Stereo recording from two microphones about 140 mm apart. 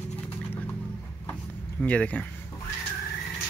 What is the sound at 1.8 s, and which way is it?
Speech, 10° left (ahead or behind).